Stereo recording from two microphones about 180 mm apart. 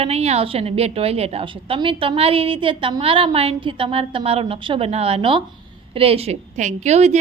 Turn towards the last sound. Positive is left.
turn(degrees=-40)  # may be behind; listen again after turning